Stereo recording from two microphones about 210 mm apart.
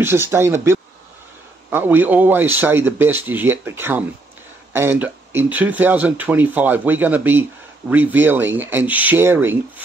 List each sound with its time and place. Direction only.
0.0 s speech: 10° right (ahead or behind)